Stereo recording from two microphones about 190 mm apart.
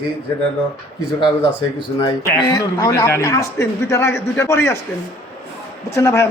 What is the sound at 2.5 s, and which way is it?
A man's voice, 20° left (ahead or behind).